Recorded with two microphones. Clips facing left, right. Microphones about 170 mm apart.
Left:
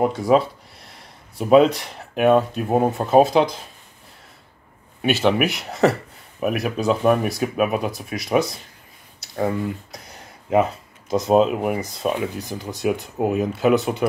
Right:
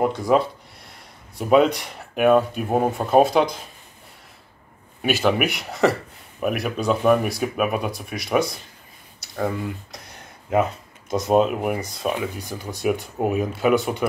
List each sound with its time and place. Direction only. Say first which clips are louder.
0.0 s speech: left 2 dB; centre (ahead or behind)
5.1 s speech: left 1 dB; centre (ahead or behind)
10.5 s speech: left 2 dB; centre (ahead or behind)